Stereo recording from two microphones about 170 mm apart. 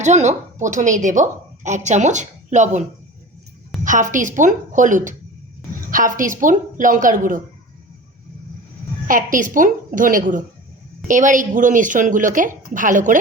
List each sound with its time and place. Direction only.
0.0 s a woman's voice: 45° right (ahead or behind)
3.8 s a woman's voice: 50° right (ahead or behind)
9.0 s a woman's voice: 50° right (ahead or behind)